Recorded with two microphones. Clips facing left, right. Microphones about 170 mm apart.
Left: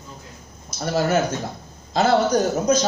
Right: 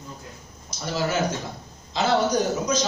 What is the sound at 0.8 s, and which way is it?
A man's voice, 50° left (ahead or behind).